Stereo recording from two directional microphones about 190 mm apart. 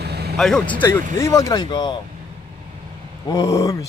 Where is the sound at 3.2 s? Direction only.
20° left (ahead or behind).